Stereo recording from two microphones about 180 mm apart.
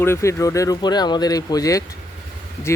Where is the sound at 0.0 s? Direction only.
15° left (ahead or behind).